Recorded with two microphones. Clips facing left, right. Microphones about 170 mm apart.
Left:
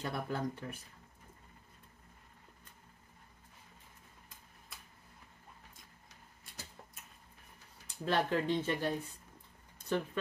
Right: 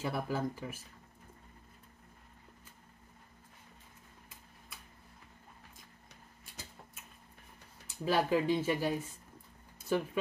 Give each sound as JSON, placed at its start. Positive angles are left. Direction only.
{"t": 0.0, "sound": "speech", "side_deg": -5}
{"t": 7.8, "sound": "speech", "side_deg": -5}
{"t": 9.8, "sound": "a sound", "side_deg": -5}